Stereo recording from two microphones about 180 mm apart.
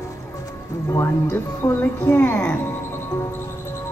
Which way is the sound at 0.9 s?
10° left (ahead or behind).